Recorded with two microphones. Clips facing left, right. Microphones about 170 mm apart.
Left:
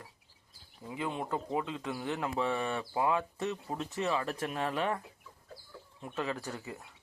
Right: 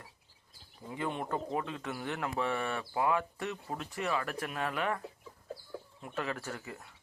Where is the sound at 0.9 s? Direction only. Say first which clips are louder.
Even; 10° left (ahead or behind); by 4.9 s 25° left (ahead or behind).